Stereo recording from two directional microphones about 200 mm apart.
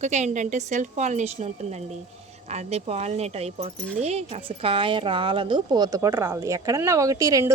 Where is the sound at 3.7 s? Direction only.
5° left (ahead or behind).